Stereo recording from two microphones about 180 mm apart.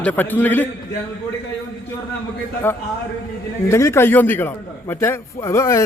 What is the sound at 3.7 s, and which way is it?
A man's voice, 15° left (ahead or behind).